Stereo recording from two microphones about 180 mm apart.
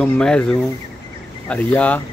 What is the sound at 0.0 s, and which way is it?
Speech, 5° left (ahead or behind).